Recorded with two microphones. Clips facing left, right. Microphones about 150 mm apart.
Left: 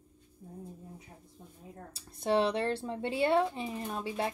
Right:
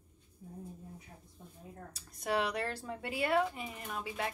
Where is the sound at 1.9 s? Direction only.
30° left (ahead or behind).